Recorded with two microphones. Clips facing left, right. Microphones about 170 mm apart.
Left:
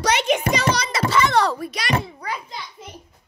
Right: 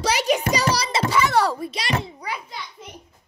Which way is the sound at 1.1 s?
5° right (ahead or behind).